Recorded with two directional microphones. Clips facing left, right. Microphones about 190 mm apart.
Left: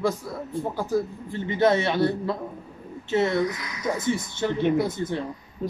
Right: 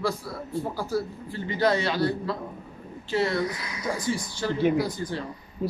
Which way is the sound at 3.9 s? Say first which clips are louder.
Left 3 dB; 20° left (ahead or behind).